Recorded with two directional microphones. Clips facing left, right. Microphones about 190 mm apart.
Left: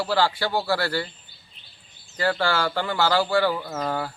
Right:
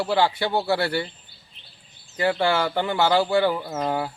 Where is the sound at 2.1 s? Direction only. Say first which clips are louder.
Right 2 dB; 20° right (ahead or behind).